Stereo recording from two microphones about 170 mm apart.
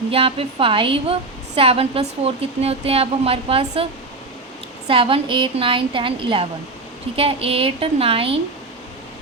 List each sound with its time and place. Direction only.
0.1 s a woman's voice: 35° right (ahead or behind)
4.9 s a woman's voice: 30° right (ahead or behind)